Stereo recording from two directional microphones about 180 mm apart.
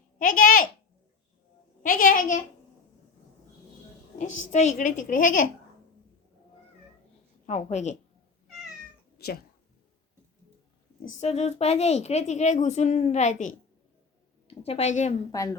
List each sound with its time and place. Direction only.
0.2 s speech: 50° left (ahead or behind)
1.8 s a woman's voice: 50° left (ahead or behind)
4.2 s a woman's voice: 40° left (ahead or behind)
7.4 s a woman's voice: 40° left (ahead or behind)
9.1 s cat: 60° left (ahead or behind)
11.2 s a woman's voice: 40° left (ahead or behind)
15.3 s a woman's voice: 20° left (ahead or behind)